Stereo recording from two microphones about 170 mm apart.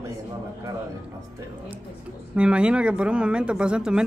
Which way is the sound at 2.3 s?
5° right (ahead or behind).